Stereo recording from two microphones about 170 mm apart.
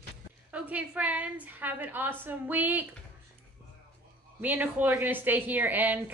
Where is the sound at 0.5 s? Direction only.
10° right (ahead or behind).